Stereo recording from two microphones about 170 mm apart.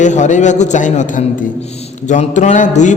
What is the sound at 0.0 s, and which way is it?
Mantra, 45° left (ahead or behind).